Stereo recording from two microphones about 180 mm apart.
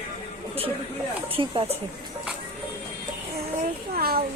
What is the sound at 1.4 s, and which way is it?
Speech, 30° right (ahead or behind).